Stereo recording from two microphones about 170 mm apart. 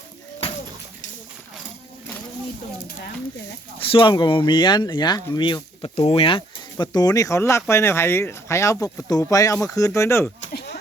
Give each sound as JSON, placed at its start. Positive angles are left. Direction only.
{"t": 3.9, "sound": "speech", "side_deg": 30}